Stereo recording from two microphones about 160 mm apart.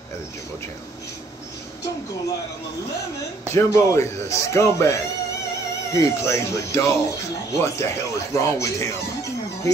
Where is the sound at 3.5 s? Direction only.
20° left (ahead or behind).